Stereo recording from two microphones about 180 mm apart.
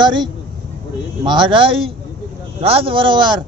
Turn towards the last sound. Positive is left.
turn(degrees=-25)  # may be behind; listen again after turning